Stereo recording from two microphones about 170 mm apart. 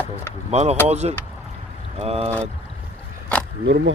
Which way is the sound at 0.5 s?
40° right (ahead or behind).